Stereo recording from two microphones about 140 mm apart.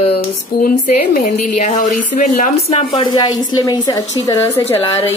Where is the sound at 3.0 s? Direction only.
30° left (ahead or behind).